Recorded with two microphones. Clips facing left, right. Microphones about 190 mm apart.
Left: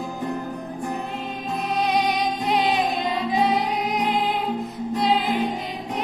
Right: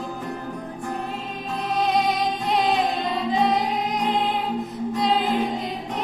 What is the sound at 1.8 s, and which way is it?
Music, centre (ahead or behind).